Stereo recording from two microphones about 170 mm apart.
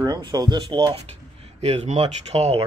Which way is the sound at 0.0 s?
25° right (ahead or behind).